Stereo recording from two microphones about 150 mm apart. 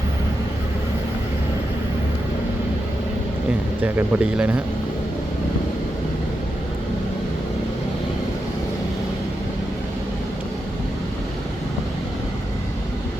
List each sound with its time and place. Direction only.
3.8 s speech: 10° right (ahead or behind)